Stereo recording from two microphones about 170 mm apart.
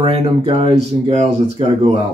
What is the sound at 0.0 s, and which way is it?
Speech, 35° right (ahead or behind).